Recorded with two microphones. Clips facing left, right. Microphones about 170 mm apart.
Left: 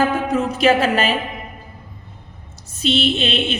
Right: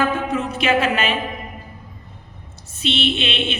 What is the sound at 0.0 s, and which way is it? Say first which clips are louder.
Music: left 3 dB; 40° left (ahead or behind).